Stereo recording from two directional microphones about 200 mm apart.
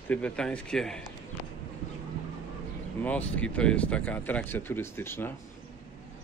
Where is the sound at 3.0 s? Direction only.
5° left (ahead or behind).